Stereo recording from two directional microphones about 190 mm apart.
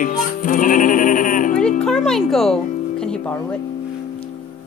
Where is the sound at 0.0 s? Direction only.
45° left (ahead or behind).